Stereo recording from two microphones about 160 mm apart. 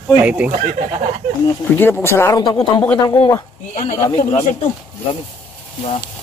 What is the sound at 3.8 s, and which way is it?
Speech, 45° left (ahead or behind).